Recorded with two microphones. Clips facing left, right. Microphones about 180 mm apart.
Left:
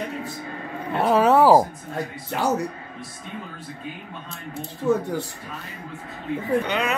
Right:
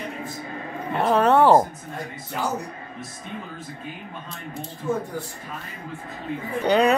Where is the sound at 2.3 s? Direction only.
75° left (ahead or behind).